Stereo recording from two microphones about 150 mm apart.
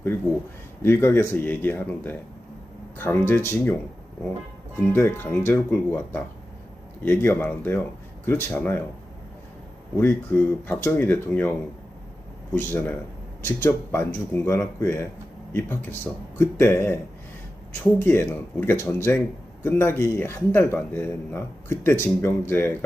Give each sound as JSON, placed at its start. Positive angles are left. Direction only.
{"t": 0.8, "sound": "speech", "side_deg": 15}
{"t": 10.0, "sound": "speech", "side_deg": 10}
{"t": 12.5, "sound": "speech", "side_deg": 15}
{"t": 18.0, "sound": "speech", "side_deg": 15}